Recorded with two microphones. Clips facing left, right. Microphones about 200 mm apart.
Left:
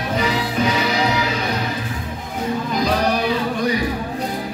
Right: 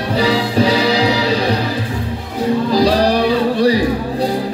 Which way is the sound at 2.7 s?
35° right (ahead or behind).